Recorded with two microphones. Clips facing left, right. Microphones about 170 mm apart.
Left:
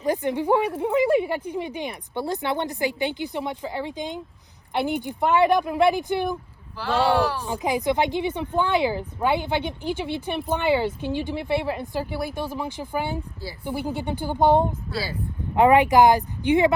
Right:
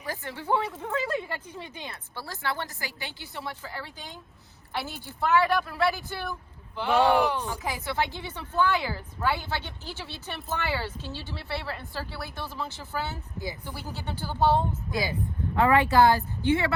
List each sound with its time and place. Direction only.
0.0 s a woman's voice: 20° left (ahead or behind)
6.7 s speech: 10° right (ahead or behind)
7.3 s a woman's voice: 15° left (ahead or behind)